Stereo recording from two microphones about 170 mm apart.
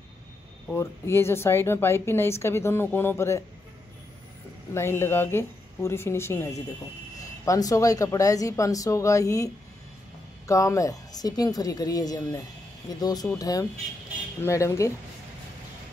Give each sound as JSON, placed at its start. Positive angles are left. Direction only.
{"t": 0.7, "sound": "speech", "side_deg": 15}
{"t": 4.7, "sound": "speech", "side_deg": 15}